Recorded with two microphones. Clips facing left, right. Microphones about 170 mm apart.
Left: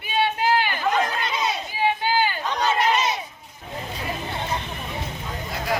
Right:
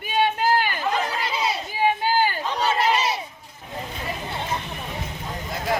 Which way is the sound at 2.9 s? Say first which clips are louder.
Even; 30° right (ahead or behind).